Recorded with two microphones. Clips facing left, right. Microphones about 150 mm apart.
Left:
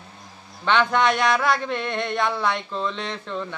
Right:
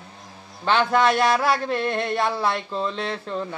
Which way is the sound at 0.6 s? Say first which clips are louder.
Right 1 dB; centre (ahead or behind).